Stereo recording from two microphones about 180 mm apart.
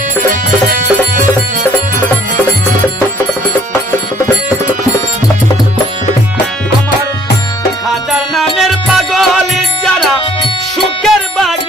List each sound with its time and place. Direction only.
0.7 s music: 45° right (ahead or behind)
8.1 s music: centre (ahead or behind)
11.0 s music: centre (ahead or behind)